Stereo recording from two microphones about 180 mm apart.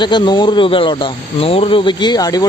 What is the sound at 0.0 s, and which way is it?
Speech, 25° left (ahead or behind).